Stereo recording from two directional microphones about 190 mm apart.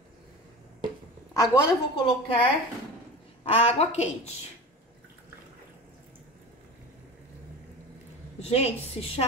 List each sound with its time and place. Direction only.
1.3 s a woman's voice: 20° left (ahead or behind); by 4.4 s 35° left (ahead or behind)
8.4 s a woman's voice: 35° left (ahead or behind)